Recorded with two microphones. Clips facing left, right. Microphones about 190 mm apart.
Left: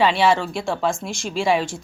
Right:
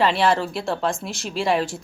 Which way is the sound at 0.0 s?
Centre (ahead or behind).